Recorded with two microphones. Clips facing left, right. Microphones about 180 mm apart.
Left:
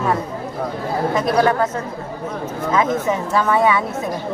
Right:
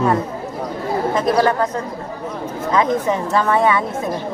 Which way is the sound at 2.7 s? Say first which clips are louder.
Right 1 dB; 5° left (ahead or behind).